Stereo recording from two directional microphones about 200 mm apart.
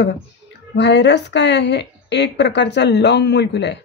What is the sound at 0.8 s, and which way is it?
A woman's voice, 60° left (ahead or behind).